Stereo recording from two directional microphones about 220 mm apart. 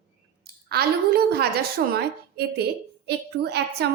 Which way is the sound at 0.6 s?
45° right (ahead or behind).